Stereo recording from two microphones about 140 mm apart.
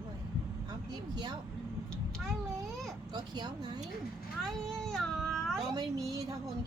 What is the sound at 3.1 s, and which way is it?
Speech, 30° right (ahead or behind).